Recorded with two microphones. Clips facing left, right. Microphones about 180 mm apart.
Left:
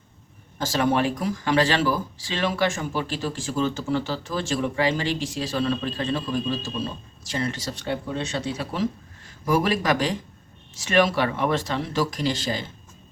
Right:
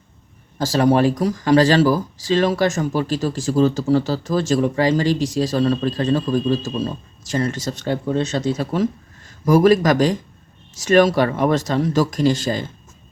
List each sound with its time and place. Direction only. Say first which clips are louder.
0.6 s speech: right 6 dB; 40° right (ahead or behind)